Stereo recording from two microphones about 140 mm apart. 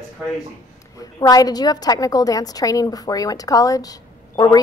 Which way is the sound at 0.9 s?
25° left (ahead or behind).